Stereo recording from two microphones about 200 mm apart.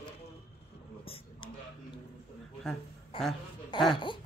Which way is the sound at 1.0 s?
30° left (ahead or behind).